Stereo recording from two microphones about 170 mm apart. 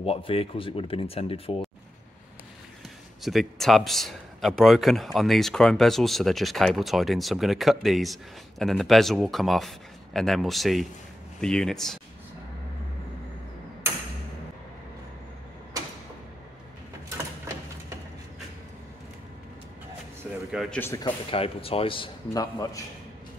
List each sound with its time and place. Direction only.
0.0 s speech: 35° left (ahead or behind)
3.2 s a man's voice: centre (ahead or behind)
20.2 s a sound: 10° right (ahead or behind)
20.8 s speech: 15° left (ahead or behind)
21.3 s speech: 35° left (ahead or behind)
22.3 s a man's voice: 20° left (ahead or behind)